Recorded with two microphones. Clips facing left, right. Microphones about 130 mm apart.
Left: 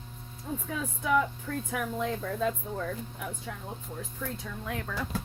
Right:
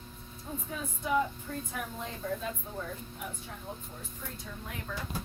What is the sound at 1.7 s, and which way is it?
Speech, 90° left.